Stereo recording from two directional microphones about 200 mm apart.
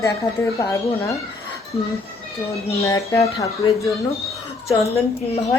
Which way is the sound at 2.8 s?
15° left (ahead or behind).